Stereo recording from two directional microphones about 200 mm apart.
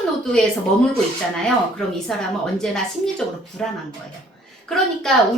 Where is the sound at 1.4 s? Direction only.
5° left (ahead or behind).